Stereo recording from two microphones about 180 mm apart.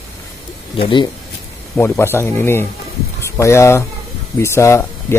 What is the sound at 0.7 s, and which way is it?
Speech, 30° left (ahead or behind).